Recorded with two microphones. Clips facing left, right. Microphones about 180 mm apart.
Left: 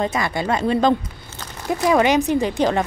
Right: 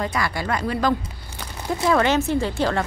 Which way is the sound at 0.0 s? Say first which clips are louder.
Left 3 dB; 25° left (ahead or behind).